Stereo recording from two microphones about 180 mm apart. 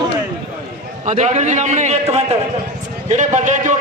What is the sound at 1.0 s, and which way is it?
A man's voice, 40° right (ahead or behind).